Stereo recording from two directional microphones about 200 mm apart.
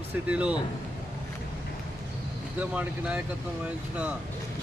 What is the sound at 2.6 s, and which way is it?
Speech, 5° right (ahead or behind).